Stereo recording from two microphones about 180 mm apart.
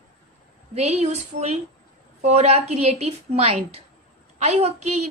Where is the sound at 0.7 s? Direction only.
35° right (ahead or behind).